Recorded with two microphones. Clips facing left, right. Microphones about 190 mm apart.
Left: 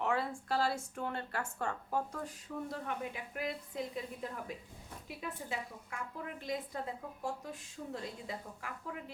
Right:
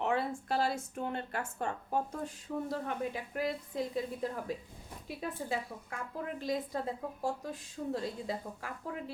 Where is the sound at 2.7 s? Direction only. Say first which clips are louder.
Right 4 dB; 35° right (ahead or behind).